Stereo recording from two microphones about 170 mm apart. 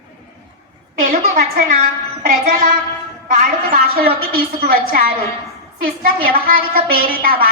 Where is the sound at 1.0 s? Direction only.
55° right (ahead or behind).